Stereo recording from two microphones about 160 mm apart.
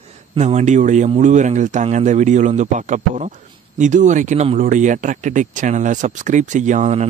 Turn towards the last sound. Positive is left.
turn(degrees=-50)  # may be behind; listen again after turning